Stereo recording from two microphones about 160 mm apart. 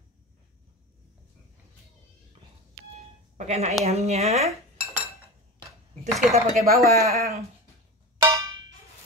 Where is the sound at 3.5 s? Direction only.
45° right (ahead or behind).